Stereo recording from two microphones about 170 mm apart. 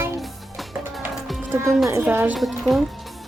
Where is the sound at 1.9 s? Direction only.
10° right (ahead or behind).